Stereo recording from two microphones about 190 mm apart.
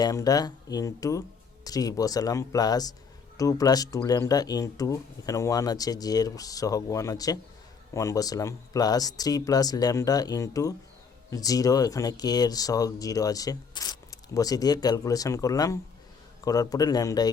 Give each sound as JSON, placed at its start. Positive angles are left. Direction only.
{"t": 0.0, "sound": "speech", "side_deg": 20}